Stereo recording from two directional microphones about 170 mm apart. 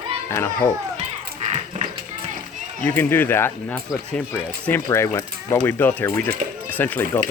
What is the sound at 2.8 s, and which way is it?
Speech, 10° left (ahead or behind).